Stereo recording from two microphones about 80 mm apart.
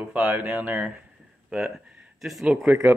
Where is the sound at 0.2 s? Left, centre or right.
Right.